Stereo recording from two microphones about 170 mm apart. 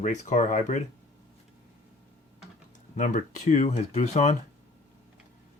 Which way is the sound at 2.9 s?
45° left (ahead or behind).